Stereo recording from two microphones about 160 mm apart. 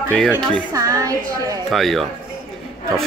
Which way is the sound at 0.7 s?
20° right (ahead or behind).